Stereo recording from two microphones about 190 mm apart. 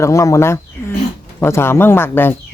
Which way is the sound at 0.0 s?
15° left (ahead or behind).